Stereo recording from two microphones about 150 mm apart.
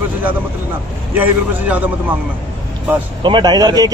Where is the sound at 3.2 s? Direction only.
30° right (ahead or behind).